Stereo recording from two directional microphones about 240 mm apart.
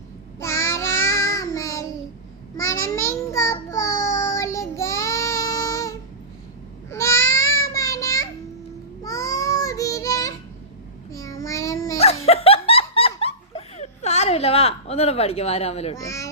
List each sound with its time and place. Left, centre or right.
0.3 s child singing: centre
6.9 s a sound: centre
7.6 s child singing: centre
11.9 s laughter: left
16.0 s speech: centre